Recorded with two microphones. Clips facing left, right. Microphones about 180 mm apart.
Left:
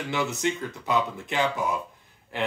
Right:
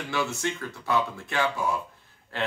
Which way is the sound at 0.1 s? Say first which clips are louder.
Left 2 dB; 20° left (ahead or behind).